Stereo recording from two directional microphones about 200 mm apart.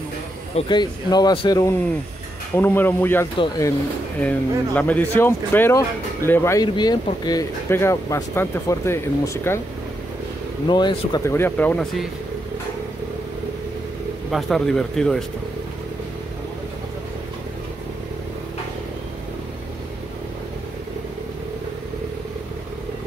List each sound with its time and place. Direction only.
0.6 s speech: 20° left (ahead or behind)
4.2 s speech: 5° left (ahead or behind)
10.7 s speech: 20° left (ahead or behind); by 12.1 s 5° left (ahead or behind)
14.3 s speech: centre (ahead or behind)